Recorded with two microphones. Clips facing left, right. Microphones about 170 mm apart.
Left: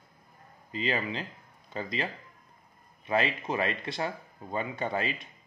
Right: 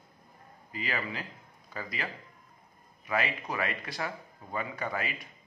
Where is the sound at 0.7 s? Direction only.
25° left (ahead or behind).